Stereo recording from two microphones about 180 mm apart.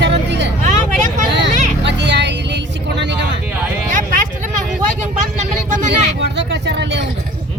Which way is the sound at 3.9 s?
45° right (ahead or behind).